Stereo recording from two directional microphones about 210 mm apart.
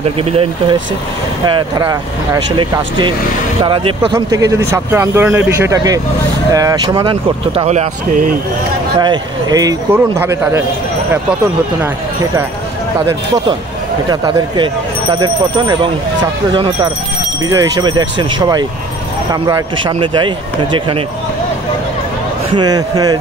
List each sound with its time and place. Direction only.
0.2 s speech: 25° right (ahead or behind)
9.0 s speech: 20° right (ahead or behind)
15.1 s speech: 20° right (ahead or behind)
22.5 s speech: 20° right (ahead or behind)